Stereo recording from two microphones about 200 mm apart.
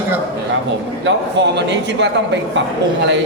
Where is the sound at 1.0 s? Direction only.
60° right (ahead or behind).